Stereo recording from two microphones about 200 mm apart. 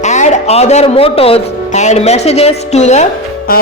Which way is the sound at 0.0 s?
35° left (ahead or behind).